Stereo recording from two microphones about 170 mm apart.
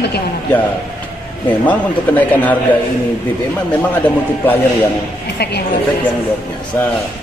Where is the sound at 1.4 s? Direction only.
10° left (ahead or behind).